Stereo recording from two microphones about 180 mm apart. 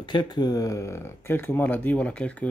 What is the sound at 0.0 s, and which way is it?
Speech, 25° left (ahead or behind).